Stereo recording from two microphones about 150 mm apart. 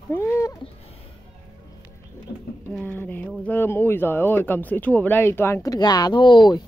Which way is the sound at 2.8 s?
15° left (ahead or behind).